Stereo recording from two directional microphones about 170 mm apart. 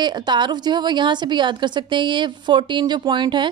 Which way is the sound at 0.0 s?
25° right (ahead or behind).